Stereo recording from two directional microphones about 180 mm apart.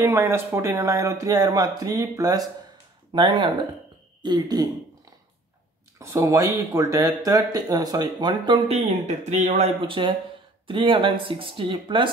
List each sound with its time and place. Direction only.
0.0 s speech: 15° right (ahead or behind)
5.9 s speech: 15° right (ahead or behind)